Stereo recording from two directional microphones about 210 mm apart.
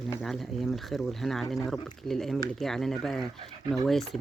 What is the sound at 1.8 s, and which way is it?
Speech, centre (ahead or behind).